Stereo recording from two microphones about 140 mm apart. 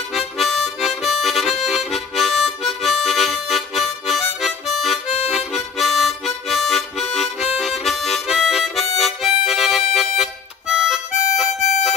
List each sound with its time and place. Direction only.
0.1 s harmonica: centre (ahead or behind)
5.0 s harmonica: 50° left (ahead or behind)
5.3 s harmonica: centre (ahead or behind)
11.4 s harmonica: 55° left (ahead or behind)